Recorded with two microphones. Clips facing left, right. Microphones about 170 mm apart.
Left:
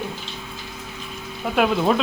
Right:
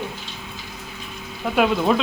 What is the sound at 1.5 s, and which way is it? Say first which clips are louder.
Speech: even; centre (ahead or behind).